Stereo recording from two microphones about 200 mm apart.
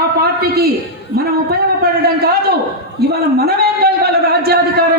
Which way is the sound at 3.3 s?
50° right (ahead or behind).